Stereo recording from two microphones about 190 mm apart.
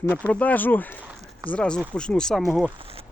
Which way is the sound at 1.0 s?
15° right (ahead or behind).